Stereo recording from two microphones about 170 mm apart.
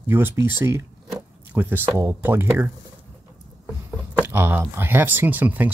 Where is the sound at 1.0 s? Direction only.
10° right (ahead or behind).